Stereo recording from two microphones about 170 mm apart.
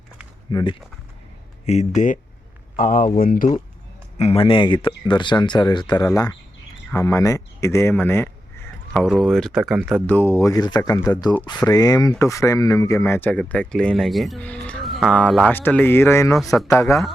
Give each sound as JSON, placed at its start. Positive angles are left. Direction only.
{"t": 0.5, "sound": "speech", "side_deg": 30}
{"t": 1.6, "sound": "speech", "side_deg": 40}
{"t": 2.7, "sound": "speech", "side_deg": 55}
{"t": 4.2, "sound": "speech", "side_deg": 35}
{"t": 8.9, "sound": "speech", "side_deg": 0}
{"t": 10.1, "sound": "speech", "side_deg": 15}